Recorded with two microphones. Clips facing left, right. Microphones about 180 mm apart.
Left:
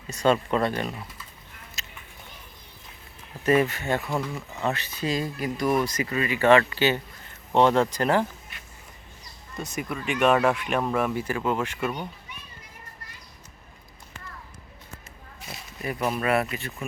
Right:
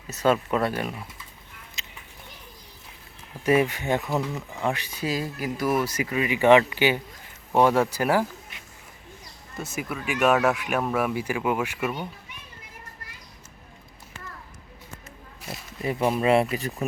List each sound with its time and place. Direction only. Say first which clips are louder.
0.1 s speech: even; 5° right (ahead or behind)
1.8 s a sound: left 1 dB; 15° right (ahead or behind)
3.4 s speech: even; 10° right (ahead or behind)
9.6 s speech: even; 5° right (ahead or behind)
15.4 s a sound: right 3 dB; centre (ahead or behind)
15.8 s speech: right 4 dB; 25° right (ahead or behind)